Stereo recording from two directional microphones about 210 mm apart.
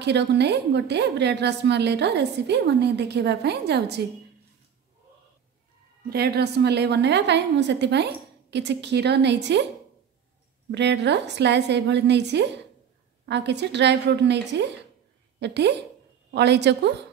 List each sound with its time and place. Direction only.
0.0 s a woman's voice: 55° right (ahead or behind)
6.0 s a woman's voice: 50° right (ahead or behind)
10.7 s a woman's voice: 55° right (ahead or behind)